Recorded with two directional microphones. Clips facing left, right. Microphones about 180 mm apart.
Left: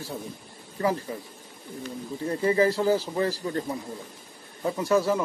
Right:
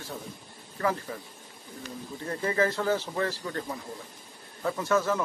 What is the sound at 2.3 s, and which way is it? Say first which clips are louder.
Speech: left 5 dB; 20° left (ahead or behind).